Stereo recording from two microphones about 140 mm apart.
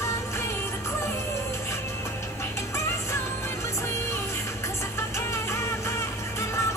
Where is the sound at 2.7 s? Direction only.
20° left (ahead or behind).